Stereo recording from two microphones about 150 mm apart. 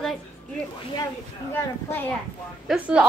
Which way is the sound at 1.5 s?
15° left (ahead or behind).